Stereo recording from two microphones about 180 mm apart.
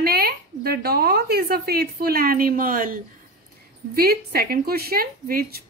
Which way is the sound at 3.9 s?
60° right (ahead or behind).